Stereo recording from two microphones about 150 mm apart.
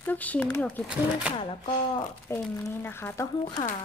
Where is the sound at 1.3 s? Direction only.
35° left (ahead or behind).